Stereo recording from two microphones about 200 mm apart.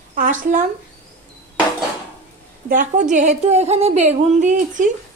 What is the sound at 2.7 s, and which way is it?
A woman's voice, 40° right (ahead or behind).